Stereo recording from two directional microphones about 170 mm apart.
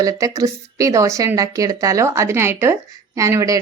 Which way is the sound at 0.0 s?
20° right (ahead or behind).